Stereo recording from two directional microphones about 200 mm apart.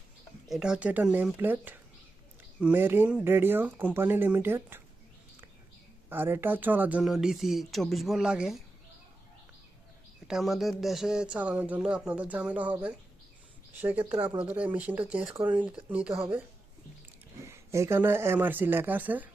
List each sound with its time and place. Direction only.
0.4 s speech: centre (ahead or behind)
6.1 s speech: 10° right (ahead or behind)
10.2 s speech: centre (ahead or behind)
14.0 s speech: 20° right (ahead or behind)
14.4 s speech: 5° right (ahead or behind)
17.4 s speech: 15° right (ahead or behind)